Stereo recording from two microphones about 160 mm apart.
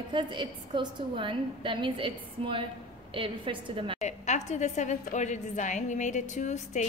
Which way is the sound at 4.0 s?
45° left (ahead or behind).